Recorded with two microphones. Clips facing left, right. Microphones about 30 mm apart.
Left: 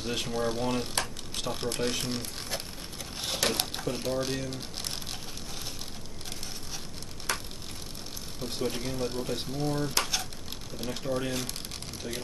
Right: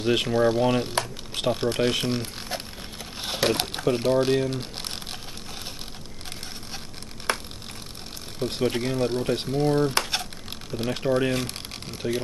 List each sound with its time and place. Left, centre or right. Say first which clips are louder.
0.0 s speech: right 9 dB; right
1.8 s speech: right 7 dB; right
2.0 s a sound: right 6 dB; right
3.2 s crumpling: right 5 dB; centre
7.3 s a sound: right 6 dB; right
8.4 s speech: right 8 dB; right